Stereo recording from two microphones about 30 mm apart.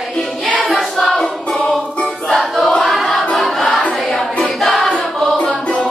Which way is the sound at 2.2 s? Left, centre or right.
Centre.